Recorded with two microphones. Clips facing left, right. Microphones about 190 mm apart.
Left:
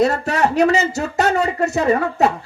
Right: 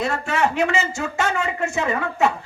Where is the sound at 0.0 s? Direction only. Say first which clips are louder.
Left 5 dB; 40° left (ahead or behind).